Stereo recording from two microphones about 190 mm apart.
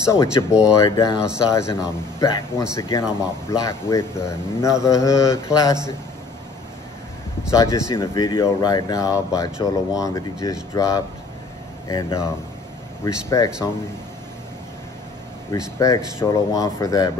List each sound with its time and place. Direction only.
0.0 s speech: 15° left (ahead or behind)
7.5 s speech: 15° left (ahead or behind)
15.5 s speech: 15° left (ahead or behind)